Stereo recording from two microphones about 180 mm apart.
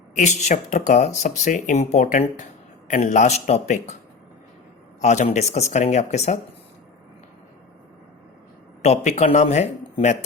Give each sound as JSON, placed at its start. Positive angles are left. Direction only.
{"t": 0.2, "sound": "a man's voice", "side_deg": 40}
{"t": 4.9, "sound": "speech", "side_deg": 40}
{"t": 9.0, "sound": "speech", "side_deg": 40}